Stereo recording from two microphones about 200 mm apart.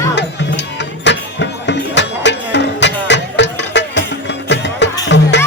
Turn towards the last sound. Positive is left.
turn(degrees=60)  # may be behind; listen again after turning